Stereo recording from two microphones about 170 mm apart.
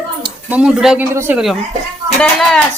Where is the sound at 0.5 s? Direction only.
5° right (ahead or behind).